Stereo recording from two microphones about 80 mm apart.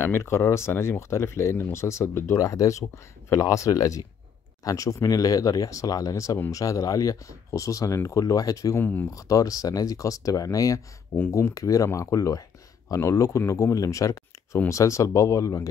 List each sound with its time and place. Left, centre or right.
0.0 s speech: left
8.7 s speech: left
9.0 s speech: left